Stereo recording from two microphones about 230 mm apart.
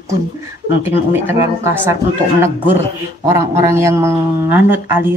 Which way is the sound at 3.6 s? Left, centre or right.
Centre.